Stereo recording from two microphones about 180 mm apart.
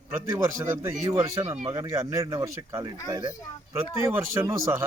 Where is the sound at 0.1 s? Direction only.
15° right (ahead or behind).